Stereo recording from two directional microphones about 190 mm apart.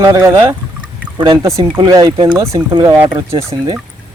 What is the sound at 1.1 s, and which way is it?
Speech, 25° right (ahead or behind).